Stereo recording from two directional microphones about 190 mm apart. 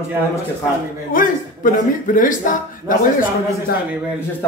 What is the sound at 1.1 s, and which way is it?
A man's voice, 45° left (ahead or behind).